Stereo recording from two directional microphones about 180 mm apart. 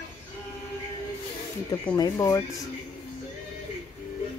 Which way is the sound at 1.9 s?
20° left (ahead or behind).